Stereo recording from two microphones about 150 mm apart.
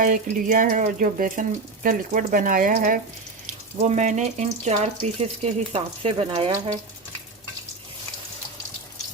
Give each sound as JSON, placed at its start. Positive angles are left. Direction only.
{"t": 0.0, "sound": "speech", "side_deg": -60}
{"t": 3.8, "sound": "speech", "side_deg": -50}